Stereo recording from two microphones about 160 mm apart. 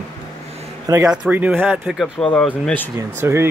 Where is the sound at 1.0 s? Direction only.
5° right (ahead or behind).